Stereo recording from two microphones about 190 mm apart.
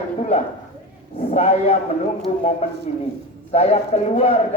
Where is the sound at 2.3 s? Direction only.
30° left (ahead or behind).